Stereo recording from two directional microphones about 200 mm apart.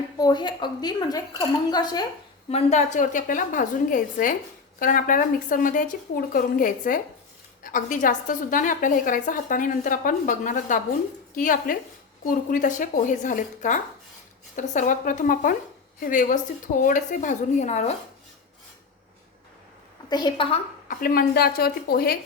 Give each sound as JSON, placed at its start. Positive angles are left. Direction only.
{"t": 0.2, "sound": "a woman's voice", "side_deg": 20}
{"t": 2.5, "sound": "a woman's voice", "side_deg": 35}
{"t": 20.1, "sound": "a woman's voice", "side_deg": 20}
{"t": 20.8, "sound": "speech", "side_deg": 45}